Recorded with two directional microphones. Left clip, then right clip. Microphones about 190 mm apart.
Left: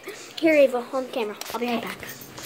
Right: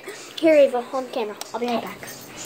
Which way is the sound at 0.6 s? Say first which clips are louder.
Right 2 dB; 15° left (ahead or behind).